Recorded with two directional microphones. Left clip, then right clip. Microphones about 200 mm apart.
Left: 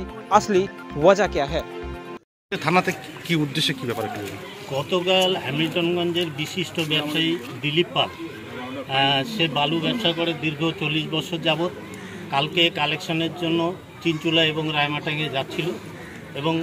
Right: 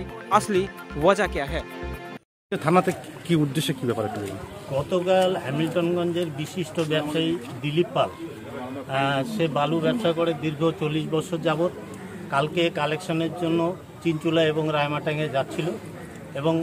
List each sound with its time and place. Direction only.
0.3 s speech: centre (ahead or behind)
2.5 s speech: 50° right (ahead or behind)
4.9 s a man's voice: 10° right (ahead or behind)
8.9 s a man's voice: 10° right (ahead or behind)